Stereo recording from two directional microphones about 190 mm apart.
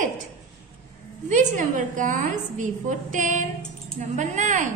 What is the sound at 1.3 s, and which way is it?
A woman's voice, 40° right (ahead or behind).